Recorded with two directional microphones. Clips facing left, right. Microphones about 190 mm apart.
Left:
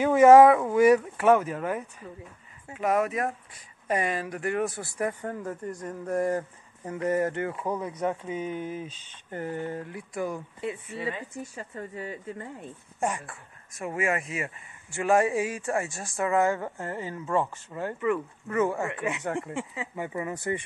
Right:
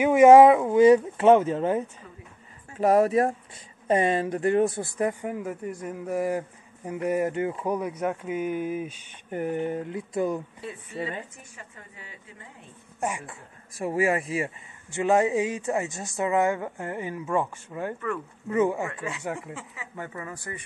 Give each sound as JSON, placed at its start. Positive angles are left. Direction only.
{"t": 0.0, "sound": "a man's voice", "side_deg": -15}
{"t": 11.5, "sound": "a woman's voice", "side_deg": 40}
{"t": 13.7, "sound": "a man's voice", "side_deg": -35}
{"t": 18.9, "sound": "speech", "side_deg": 15}